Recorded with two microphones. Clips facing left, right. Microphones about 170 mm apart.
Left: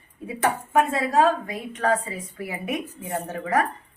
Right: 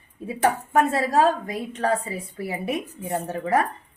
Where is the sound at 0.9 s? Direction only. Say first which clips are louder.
Even; 40° right (ahead or behind).